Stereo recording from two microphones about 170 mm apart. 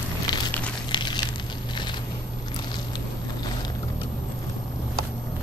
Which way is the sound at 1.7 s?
25° left (ahead or behind).